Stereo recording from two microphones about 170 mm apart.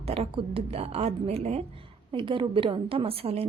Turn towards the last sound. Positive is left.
turn(degrees=-35)  # may be behind; listen again after turning